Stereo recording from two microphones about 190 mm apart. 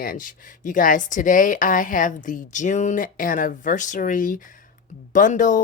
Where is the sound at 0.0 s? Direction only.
45° left (ahead or behind).